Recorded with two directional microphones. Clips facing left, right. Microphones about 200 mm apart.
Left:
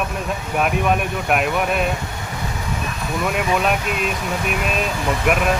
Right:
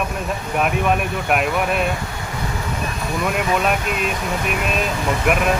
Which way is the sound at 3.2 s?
Centre (ahead or behind).